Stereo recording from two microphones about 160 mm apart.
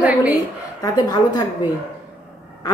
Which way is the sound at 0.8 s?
25° left (ahead or behind).